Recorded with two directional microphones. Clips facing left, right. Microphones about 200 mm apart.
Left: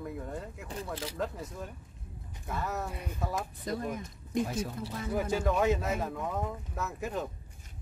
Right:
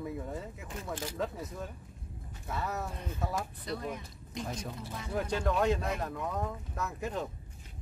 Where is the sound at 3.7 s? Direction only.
45° left (ahead or behind).